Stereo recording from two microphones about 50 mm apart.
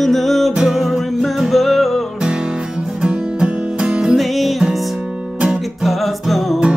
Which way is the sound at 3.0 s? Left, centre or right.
Centre.